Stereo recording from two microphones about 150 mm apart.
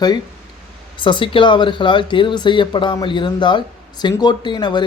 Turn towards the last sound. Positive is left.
turn(degrees=30)  # may be behind; listen again after turning